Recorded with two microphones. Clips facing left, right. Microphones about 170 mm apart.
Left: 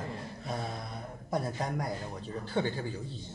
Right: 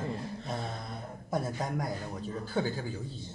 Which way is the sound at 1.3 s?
Centre (ahead or behind).